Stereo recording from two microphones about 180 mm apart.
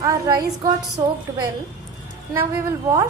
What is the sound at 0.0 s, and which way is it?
A woman's voice, 20° right (ahead or behind).